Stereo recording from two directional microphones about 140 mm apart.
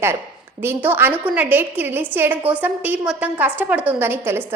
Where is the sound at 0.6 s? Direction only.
15° right (ahead or behind).